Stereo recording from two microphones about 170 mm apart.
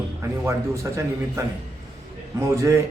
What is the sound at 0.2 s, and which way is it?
Speech, 15° right (ahead or behind).